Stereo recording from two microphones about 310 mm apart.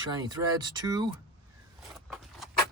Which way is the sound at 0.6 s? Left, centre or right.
Centre.